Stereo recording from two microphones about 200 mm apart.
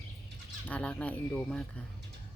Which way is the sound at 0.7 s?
5° left (ahead or behind).